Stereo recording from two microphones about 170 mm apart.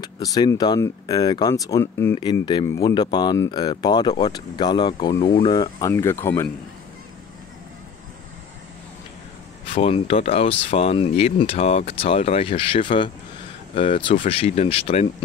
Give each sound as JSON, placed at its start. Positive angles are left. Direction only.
{"t": 0.0, "sound": "speech", "side_deg": 20}
{"t": 9.7, "sound": "speech", "side_deg": 35}